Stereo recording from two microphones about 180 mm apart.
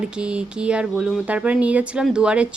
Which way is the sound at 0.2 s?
5° right (ahead or behind).